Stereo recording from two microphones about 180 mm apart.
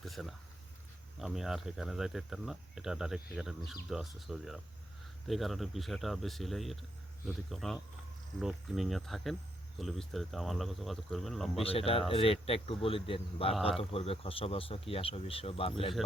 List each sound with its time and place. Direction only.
0.0 s a sound: centre (ahead or behind)
1.2 s cricket: centre (ahead or behind)
11.6 s speech: 30° left (ahead or behind)